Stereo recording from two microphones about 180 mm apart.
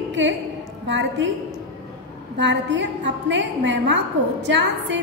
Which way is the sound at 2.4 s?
75° right (ahead or behind).